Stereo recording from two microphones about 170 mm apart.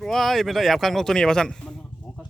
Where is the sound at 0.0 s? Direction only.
Centre (ahead or behind).